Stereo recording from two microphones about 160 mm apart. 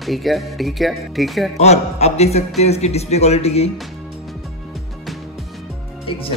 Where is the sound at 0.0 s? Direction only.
Centre (ahead or behind).